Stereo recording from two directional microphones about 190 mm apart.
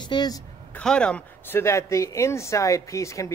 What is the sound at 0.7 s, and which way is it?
Speech, 5° left (ahead or behind).